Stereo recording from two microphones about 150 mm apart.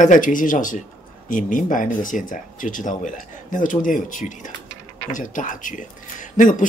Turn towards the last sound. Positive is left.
turn(degrees=60)  # may be behind; listen again after turning